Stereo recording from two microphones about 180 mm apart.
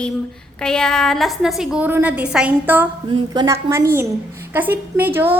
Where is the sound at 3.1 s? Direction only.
25° right (ahead or behind).